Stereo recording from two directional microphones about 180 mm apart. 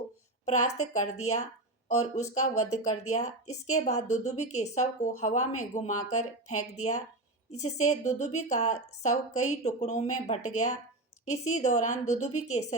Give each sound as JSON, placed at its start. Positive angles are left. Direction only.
{"t": 0.4, "sound": "a woman's voice", "side_deg": 40}